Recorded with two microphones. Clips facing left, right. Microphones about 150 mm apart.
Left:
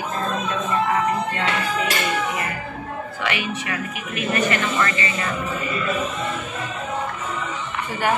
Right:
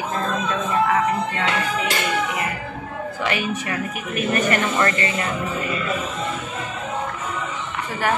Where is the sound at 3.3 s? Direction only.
40° right (ahead or behind).